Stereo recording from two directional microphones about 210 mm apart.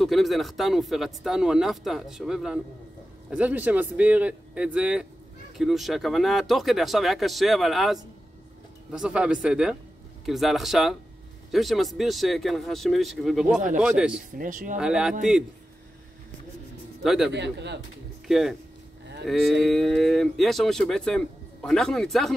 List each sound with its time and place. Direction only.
0.0 s a man's voice: centre (ahead or behind)
14.4 s speech: 40° right (ahead or behind)
14.8 s speech: 5° right (ahead or behind)
17.0 s speech: centre (ahead or behind)
17.3 s speech: 55° right (ahead or behind)
18.2 s speech: centre (ahead or behind)